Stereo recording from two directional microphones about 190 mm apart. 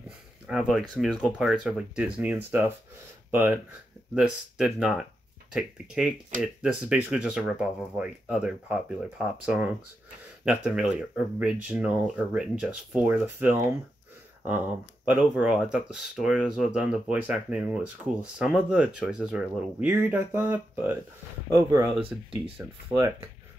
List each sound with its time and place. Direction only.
0.5 s speech: centre (ahead or behind); by 21.8 s 15° right (ahead or behind)
22.9 s speech: 5° right (ahead or behind)